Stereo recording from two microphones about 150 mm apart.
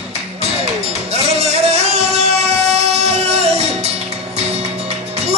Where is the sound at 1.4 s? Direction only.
45° right (ahead or behind).